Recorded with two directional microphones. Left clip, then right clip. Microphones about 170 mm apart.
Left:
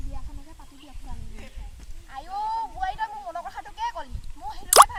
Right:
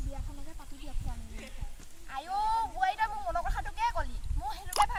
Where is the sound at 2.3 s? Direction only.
25° right (ahead or behind).